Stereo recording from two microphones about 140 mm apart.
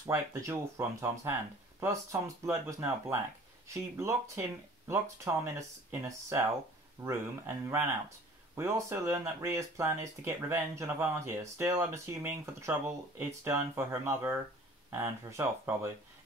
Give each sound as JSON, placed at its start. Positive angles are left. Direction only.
{"t": 0.0, "sound": "speech", "side_deg": -20}